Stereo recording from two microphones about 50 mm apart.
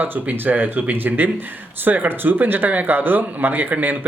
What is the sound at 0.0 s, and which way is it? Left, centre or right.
Speech, right.